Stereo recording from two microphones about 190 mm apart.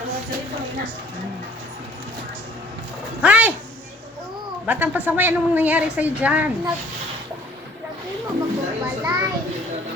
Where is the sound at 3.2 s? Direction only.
10° right (ahead or behind).